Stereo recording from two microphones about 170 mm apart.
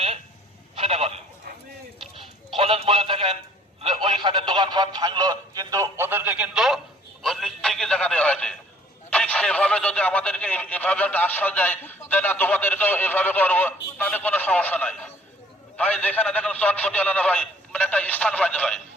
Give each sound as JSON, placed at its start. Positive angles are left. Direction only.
{"t": 0.8, "sound": "telephone", "side_deg": -35}
{"t": 2.6, "sound": "music", "side_deg": -35}
{"t": 3.8, "sound": "telephone", "side_deg": -30}
{"t": 7.2, "sound": "a sound", "side_deg": 0}